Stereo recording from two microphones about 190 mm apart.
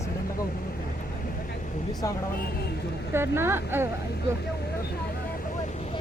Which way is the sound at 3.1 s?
10° right (ahead or behind).